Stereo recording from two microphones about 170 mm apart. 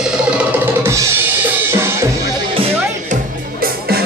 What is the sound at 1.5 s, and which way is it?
Drum kit, 15° right (ahead or behind).